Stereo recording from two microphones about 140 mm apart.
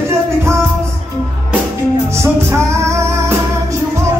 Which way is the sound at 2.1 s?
15° right (ahead or behind).